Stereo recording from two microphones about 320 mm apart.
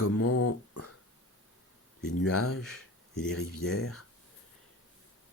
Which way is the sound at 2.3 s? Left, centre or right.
Left.